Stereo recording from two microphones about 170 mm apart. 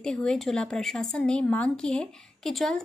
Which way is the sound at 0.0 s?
5° left (ahead or behind).